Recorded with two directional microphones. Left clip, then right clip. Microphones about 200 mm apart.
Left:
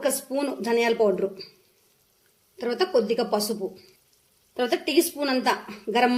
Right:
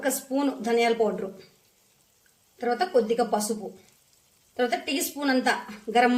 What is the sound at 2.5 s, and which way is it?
Speech, 30° left (ahead or behind).